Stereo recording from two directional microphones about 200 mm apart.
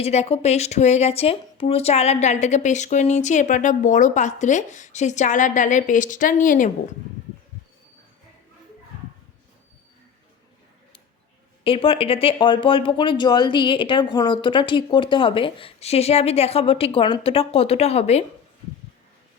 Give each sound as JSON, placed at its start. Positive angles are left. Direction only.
{"t": 0.0, "sound": "speech", "side_deg": 30}
{"t": 11.6, "sound": "speech", "side_deg": 25}